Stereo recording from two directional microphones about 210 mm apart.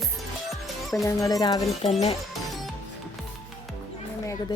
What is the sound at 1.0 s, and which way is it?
Speech, 15° left (ahead or behind).